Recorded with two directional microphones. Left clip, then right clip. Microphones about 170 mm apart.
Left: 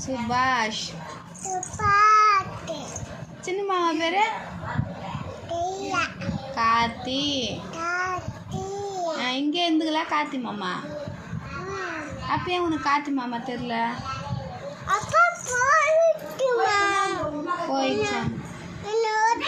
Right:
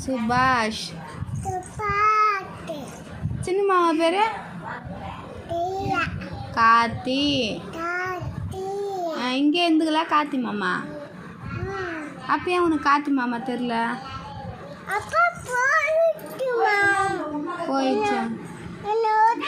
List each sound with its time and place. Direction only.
0.0 s a woman's voice: 45° right (ahead or behind)
1.8 s child singing: 10° right (ahead or behind)
3.4 s a woman's voice: 45° right (ahead or behind)
5.5 s a child's voice: 5° right (ahead or behind)
6.5 s a woman's voice: 45° right (ahead or behind)
7.8 s child singing: 10° right (ahead or behind)
8.7 s a sound: 10° right (ahead or behind)
9.2 s a woman's voice: 45° right (ahead or behind)
12.3 s a woman's voice: 45° right (ahead or behind)
14.8 s children playing: 5° right (ahead or behind)
16.4 s child singing: 5° left (ahead or behind)
17.7 s a woman's voice: 45° right (ahead or behind)
17.9 s a child's voice: 5° left (ahead or behind)
18.9 s a sound: 5° left (ahead or behind)